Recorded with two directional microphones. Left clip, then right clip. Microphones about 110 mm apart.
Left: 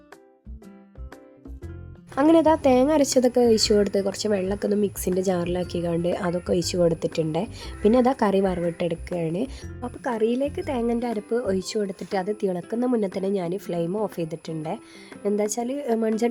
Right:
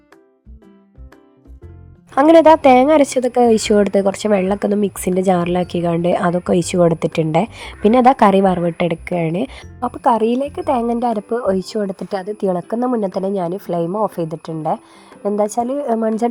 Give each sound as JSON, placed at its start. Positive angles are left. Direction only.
{"t": 2.1, "sound": "a woman's voice", "side_deg": -40}
{"t": 9.8, "sound": "a woman's voice", "side_deg": -45}